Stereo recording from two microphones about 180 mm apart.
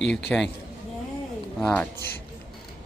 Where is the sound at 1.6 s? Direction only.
5° left (ahead or behind).